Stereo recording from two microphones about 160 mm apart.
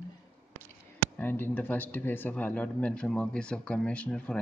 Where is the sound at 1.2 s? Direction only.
10° left (ahead or behind).